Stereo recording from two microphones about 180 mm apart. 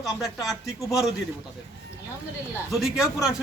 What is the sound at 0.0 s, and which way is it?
Speech, centre (ahead or behind).